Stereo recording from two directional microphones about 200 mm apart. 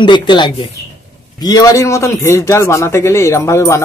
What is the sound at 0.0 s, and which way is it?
A man's voice, 25° left (ahead or behind).